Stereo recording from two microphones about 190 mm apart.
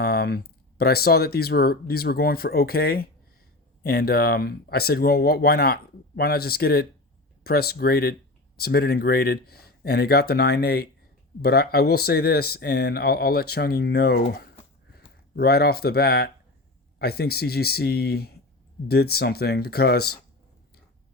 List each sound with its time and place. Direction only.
0.0 s speech: 55° left (ahead or behind)